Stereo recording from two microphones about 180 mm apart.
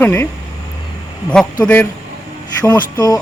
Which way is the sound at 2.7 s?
20° left (ahead or behind).